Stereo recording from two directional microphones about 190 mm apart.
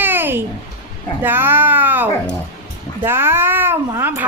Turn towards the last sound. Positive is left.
turn(degrees=-10)  # may be behind; listen again after turning